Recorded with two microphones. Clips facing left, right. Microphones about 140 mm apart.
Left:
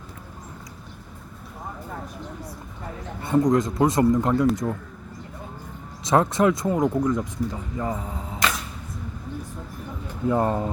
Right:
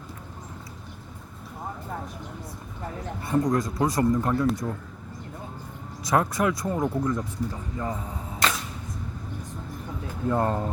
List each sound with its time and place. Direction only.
3.2 s speech: 20° left (ahead or behind)
6.1 s speech: 25° left (ahead or behind)
10.2 s speech: 10° left (ahead or behind)